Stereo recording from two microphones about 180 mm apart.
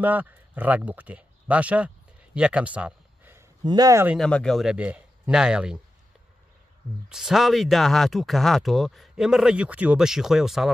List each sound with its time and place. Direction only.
0.0 s speech: 10° right (ahead or behind)
2.3 s a sound: 5° right (ahead or behind)
3.6 s speech: 20° right (ahead or behind)
4.2 s speech: 5° left (ahead or behind)
7.1 s speech: centre (ahead or behind)